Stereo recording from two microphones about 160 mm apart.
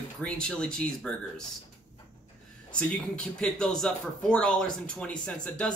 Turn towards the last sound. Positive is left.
turn(degrees=5)  # may be behind; listen again after turning